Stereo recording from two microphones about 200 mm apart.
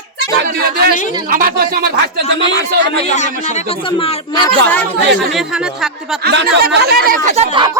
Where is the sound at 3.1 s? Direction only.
35° left (ahead or behind).